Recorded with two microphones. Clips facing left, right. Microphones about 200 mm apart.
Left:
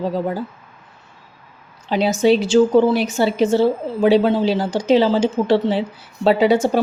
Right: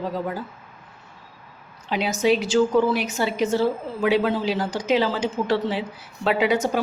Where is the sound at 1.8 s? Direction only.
30° left (ahead or behind).